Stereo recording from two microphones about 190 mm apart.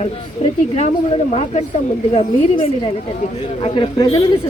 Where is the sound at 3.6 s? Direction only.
30° left (ahead or behind).